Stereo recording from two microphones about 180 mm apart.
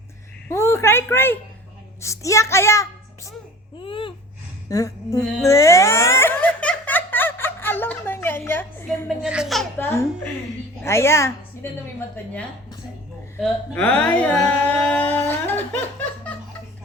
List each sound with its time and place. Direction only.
0.4 s a woman's voice: 15° left (ahead or behind)
3.8 s gasp: 30° left (ahead or behind)
4.7 s a sound: 20° left (ahead or behind)
5.4 s giggle: 15° left (ahead or behind)
9.0 s a woman's voice: 5° right (ahead or behind)
10.8 s a child's voice: 15° left (ahead or behind)